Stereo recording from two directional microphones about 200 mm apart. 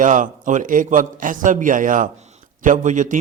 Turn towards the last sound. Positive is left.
turn(degrees=-40)  # may be behind; listen again after turning